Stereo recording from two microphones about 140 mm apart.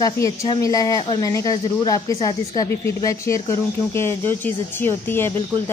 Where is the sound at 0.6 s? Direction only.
25° left (ahead or behind).